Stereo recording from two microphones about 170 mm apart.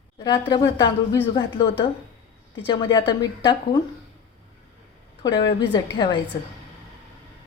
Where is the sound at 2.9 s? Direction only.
25° left (ahead or behind).